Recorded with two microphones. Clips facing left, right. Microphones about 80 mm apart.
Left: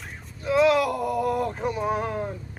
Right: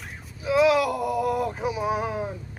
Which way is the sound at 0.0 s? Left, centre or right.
Centre.